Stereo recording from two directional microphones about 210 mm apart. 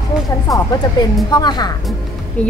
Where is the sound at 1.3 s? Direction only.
20° left (ahead or behind).